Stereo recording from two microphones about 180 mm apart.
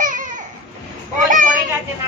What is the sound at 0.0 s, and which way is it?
Babbling, 45° right (ahead or behind).